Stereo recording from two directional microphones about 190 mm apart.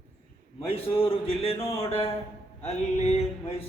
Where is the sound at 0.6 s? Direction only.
30° left (ahead or behind).